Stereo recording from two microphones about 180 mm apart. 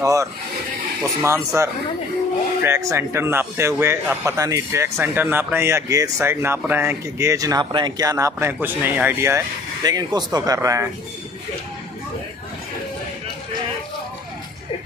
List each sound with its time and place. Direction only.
0.0 s a man's voice: 20° right (ahead or behind)